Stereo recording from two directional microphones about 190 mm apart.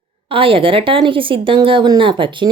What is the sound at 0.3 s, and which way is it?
A woman's voice, 30° right (ahead or behind).